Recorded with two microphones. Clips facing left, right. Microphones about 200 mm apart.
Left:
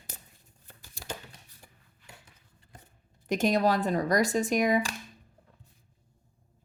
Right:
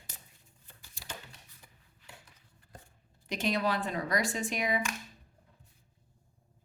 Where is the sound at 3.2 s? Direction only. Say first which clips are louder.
Left 6 dB; 45° left (ahead or behind).